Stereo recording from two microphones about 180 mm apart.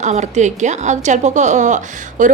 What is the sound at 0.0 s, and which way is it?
A woman's voice, 40° right (ahead or behind).